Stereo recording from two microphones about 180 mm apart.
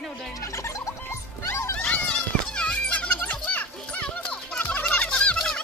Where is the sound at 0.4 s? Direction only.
15° left (ahead or behind).